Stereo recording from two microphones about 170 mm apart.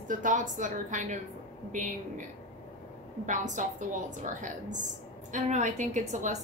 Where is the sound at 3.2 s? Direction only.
45° right (ahead or behind).